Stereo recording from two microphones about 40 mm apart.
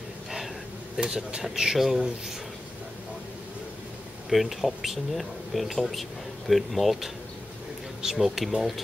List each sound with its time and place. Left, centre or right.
1.0 s speech: right
4.3 s speech: centre